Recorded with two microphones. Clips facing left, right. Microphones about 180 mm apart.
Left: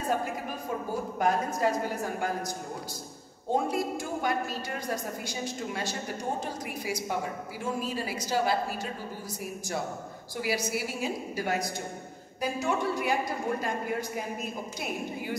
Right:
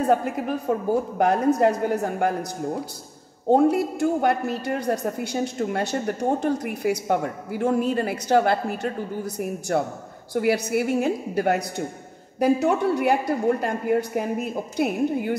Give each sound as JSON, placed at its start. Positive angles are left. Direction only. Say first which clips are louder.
{"t": 0.1, "sound": "a woman's voice", "louder": "right 9 dB", "side_deg": -60}
{"t": 3.4, "sound": "a woman's voice", "louder": "right 10 dB", "side_deg": -65}